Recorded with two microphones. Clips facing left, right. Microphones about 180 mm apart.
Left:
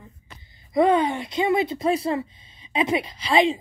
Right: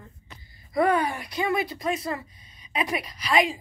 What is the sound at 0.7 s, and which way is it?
Speech, 20° left (ahead or behind).